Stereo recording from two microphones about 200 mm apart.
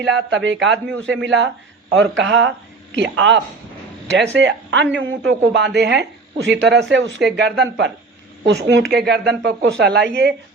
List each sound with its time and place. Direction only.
0.0 s speech: 65° right (ahead or behind)